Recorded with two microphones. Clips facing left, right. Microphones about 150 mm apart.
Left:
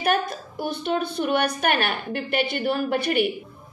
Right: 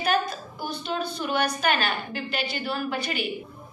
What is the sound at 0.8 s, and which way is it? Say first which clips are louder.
A woman's voice: left 5 dB; 55° left (ahead or behind).